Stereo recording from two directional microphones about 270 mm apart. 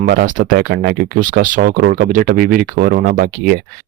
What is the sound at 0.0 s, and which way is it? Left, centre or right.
Speech, right.